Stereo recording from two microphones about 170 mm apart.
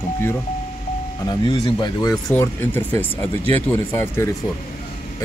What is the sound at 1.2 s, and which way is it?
Speech, 25° left (ahead or behind).